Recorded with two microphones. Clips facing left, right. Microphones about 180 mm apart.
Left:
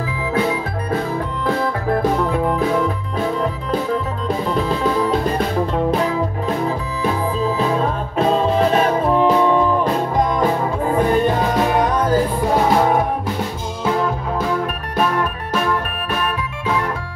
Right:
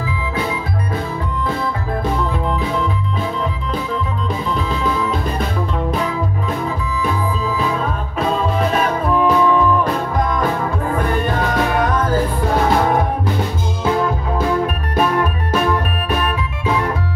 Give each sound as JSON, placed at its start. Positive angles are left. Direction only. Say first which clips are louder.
{"t": 1.6, "sound": "music", "louder": "left 3 dB", "side_deg": 50}
{"t": 7.0, "sound": "music", "louder": "left 2 dB", "side_deg": 30}
{"t": 15.0, "sound": "music", "louder": "right 2 dB", "side_deg": -5}